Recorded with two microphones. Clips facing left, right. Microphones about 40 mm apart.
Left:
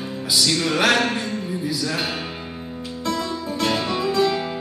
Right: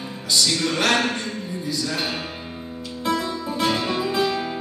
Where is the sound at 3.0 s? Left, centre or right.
Centre.